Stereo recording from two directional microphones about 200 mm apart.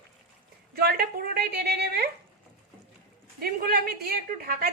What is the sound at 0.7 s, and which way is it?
A woman's voice, 45° right (ahead or behind).